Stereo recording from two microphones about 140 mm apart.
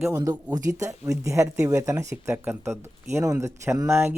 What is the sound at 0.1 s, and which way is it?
Speech, 30° right (ahead or behind).